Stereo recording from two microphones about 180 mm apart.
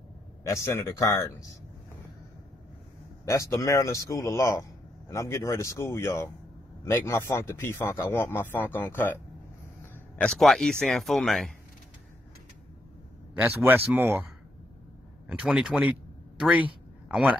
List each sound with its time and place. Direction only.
0.4 s a man's voice: 15° left (ahead or behind)
3.3 s a man's voice: 15° left (ahead or behind); by 11.5 s centre (ahead or behind)
13.3 s speech: 10° right (ahead or behind)
15.2 s a man's voice: 5° right (ahead or behind)